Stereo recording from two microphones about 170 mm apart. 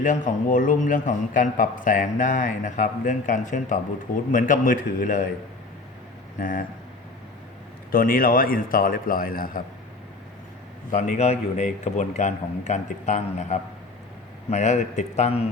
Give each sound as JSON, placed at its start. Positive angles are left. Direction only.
{"t": 0.0, "sound": "a man's voice", "side_deg": 50}
{"t": 6.4, "sound": "a man's voice", "side_deg": 55}
{"t": 7.9, "sound": "a man's voice", "side_deg": 55}
{"t": 10.9, "sound": "a man's voice", "side_deg": 45}